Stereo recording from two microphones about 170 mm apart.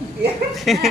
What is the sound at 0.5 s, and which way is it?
Speech, centre (ahead or behind).